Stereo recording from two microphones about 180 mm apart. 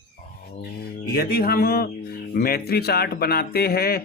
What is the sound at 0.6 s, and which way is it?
Speech, 60° left (ahead or behind).